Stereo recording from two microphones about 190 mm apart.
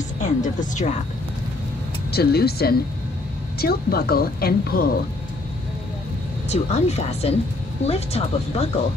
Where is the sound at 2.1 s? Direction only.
55° left (ahead or behind).